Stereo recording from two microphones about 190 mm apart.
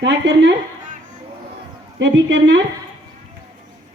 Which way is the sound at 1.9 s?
75° right (ahead or behind).